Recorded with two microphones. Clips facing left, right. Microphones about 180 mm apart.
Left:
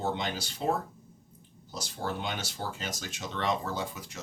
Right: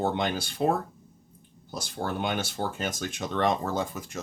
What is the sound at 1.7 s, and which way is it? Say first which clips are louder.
Speech: right 3 dB; 55° right (ahead or behind).